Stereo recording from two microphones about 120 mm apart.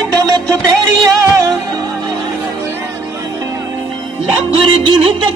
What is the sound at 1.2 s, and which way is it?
Music, 30° right (ahead or behind).